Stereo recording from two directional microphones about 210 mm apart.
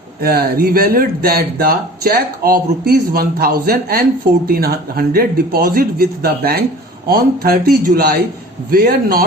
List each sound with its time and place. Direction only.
0.2 s speech: 45° right (ahead or behind)